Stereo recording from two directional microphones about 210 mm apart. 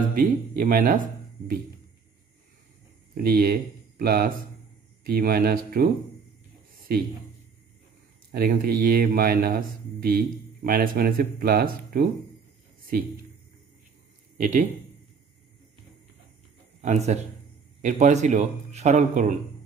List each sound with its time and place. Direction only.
0.1 s a man's voice: 45° right (ahead or behind)
3.2 s a man's voice: 45° right (ahead or behind)
8.3 s a man's voice: 45° right (ahead or behind)
14.4 s a man's voice: 40° right (ahead or behind)
16.8 s a man's voice: 35° right (ahead or behind)